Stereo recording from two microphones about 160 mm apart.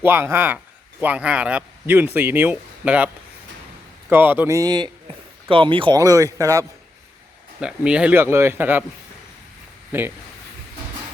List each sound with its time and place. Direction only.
0.0 s speech: 15° right (ahead or behind)
4.1 s speech: 10° right (ahead or behind); by 6.0 s 30° right (ahead or behind)
6.0 s speech: 20° right (ahead or behind)
7.6 s speech: 5° right (ahead or behind)